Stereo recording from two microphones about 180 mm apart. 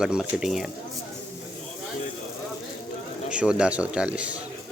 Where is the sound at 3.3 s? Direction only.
5° right (ahead or behind).